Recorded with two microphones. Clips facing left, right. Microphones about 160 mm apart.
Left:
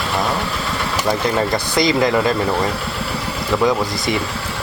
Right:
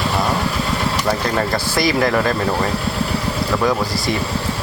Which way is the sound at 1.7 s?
20° left (ahead or behind).